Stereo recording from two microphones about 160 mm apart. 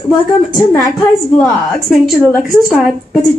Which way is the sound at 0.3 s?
30° left (ahead or behind).